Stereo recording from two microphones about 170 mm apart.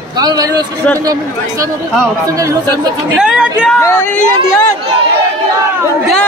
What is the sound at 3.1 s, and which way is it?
Speech, 5° right (ahead or behind).